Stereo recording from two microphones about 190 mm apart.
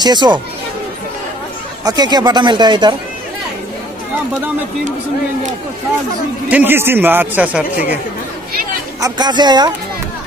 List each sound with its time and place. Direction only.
0.0 s speech: 20° right (ahead or behind)
1.9 s speech: 20° right (ahead or behind)
6.5 s speech: 10° right (ahead or behind)
9.0 s speech: 20° right (ahead or behind)